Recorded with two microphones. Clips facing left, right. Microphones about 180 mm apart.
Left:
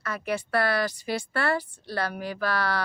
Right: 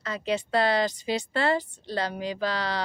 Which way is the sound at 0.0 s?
20° right (ahead or behind).